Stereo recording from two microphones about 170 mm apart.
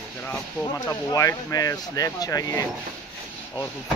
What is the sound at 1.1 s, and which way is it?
Speech, 20° left (ahead or behind).